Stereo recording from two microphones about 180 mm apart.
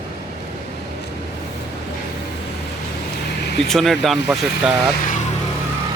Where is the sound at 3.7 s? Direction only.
Centre (ahead or behind).